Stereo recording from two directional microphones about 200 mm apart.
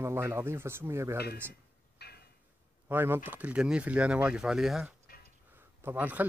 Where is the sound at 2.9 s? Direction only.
10° right (ahead or behind).